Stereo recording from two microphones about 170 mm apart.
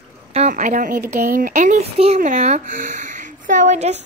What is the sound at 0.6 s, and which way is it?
Speech, 55° right (ahead or behind).